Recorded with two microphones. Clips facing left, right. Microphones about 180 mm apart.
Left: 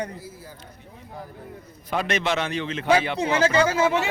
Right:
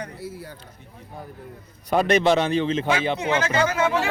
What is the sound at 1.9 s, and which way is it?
A man's voice, 40° right (ahead or behind).